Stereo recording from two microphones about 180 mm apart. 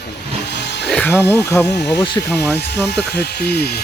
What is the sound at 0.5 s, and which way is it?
Speech, 70° left (ahead or behind).